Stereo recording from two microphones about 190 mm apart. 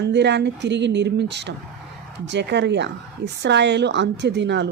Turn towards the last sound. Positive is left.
turn(degrees=-65)  # may be behind; listen again after turning